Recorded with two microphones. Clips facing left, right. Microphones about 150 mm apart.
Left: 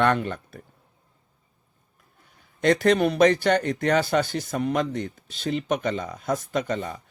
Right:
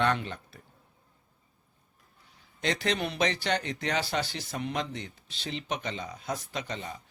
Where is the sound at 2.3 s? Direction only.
50° left (ahead or behind).